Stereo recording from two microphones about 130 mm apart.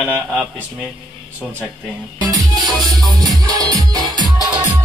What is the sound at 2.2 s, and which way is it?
Music, 25° right (ahead or behind).